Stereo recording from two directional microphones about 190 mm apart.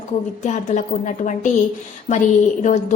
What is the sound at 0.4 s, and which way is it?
A woman's voice, 40° left (ahead or behind).